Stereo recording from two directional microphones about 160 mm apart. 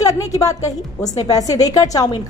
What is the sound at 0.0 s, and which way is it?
A woman's voice, 20° left (ahead or behind).